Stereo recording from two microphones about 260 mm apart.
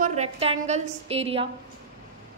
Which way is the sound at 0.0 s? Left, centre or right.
Right.